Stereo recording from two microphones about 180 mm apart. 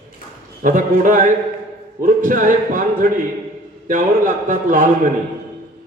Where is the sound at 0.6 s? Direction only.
45° right (ahead or behind).